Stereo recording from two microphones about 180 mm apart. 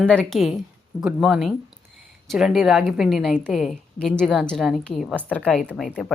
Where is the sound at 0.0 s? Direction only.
5° left (ahead or behind).